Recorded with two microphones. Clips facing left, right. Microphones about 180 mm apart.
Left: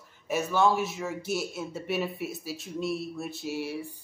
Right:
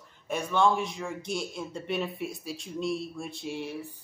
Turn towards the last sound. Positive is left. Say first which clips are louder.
# left 2 dB
turn(degrees=10)  # may be behind; listen again after turning